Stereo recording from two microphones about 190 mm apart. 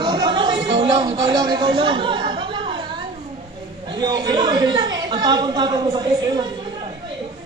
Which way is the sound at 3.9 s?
20° right (ahead or behind).